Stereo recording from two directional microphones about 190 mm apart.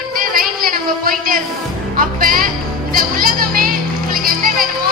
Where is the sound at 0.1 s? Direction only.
50° right (ahead or behind).